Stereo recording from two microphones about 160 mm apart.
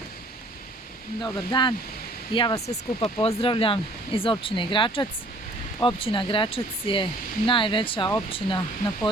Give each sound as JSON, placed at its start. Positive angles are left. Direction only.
{"t": 1.2, "sound": "speech", "side_deg": 30}